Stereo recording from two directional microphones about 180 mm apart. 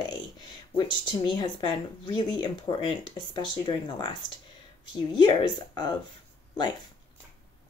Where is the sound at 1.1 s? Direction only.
25° left (ahead or behind).